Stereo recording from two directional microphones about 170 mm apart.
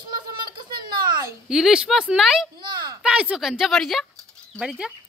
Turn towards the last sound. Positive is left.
turn(degrees=-5)  # may be behind; listen again after turning